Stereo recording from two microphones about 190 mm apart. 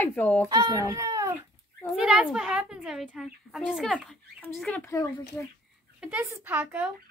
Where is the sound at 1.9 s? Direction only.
5° right (ahead or behind); by 5.3 s 15° left (ahead or behind).